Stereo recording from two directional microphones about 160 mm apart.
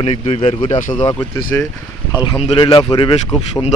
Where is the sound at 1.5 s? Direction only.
15° left (ahead or behind).